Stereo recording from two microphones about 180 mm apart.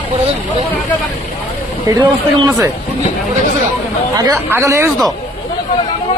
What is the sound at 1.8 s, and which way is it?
Speech, 20° right (ahead or behind).